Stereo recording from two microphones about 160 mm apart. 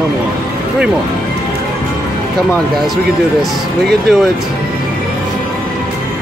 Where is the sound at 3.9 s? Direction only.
Centre (ahead or behind).